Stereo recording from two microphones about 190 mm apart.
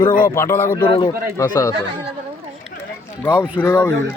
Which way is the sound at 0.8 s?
25° left (ahead or behind).